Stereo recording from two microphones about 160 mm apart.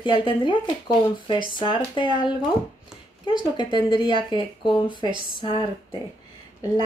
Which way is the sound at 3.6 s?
30° left (ahead or behind).